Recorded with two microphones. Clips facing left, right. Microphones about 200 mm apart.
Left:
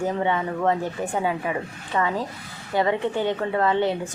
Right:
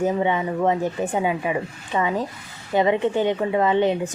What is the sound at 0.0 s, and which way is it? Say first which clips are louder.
A woman's voice: right 3 dB; 15° right (ahead or behind).